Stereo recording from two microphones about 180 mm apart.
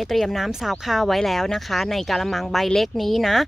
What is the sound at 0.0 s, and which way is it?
Speech, centre (ahead or behind).